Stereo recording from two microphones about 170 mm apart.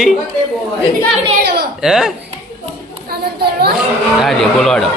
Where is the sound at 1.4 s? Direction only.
70° right (ahead or behind).